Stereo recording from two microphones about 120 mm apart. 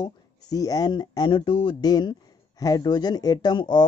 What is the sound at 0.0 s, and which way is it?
A man's voice, 30° left (ahead or behind).